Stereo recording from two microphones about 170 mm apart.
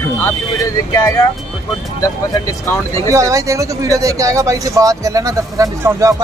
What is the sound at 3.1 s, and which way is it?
Speech, 20° right (ahead or behind).